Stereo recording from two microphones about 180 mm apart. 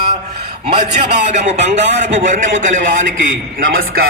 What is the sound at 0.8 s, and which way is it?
A man's voice, 40° right (ahead or behind).